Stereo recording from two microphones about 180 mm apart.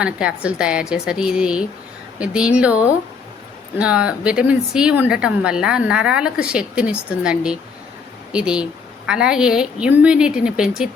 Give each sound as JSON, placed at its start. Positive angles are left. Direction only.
{"t": 0.0, "sound": "speech", "side_deg": -5}